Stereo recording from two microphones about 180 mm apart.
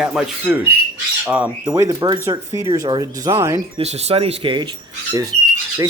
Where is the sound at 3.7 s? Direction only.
35° right (ahead or behind).